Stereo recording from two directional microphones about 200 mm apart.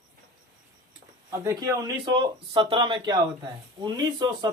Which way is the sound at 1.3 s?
15° right (ahead or behind).